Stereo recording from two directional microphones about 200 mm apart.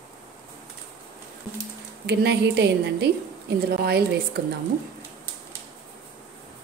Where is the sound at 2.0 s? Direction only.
55° right (ahead or behind).